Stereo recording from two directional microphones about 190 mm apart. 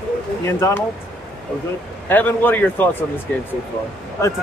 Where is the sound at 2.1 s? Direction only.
10° left (ahead or behind).